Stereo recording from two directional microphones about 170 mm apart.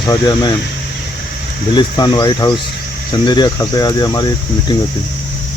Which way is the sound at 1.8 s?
25° left (ahead or behind).